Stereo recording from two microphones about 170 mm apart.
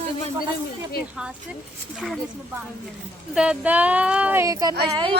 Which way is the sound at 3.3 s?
5° right (ahead or behind).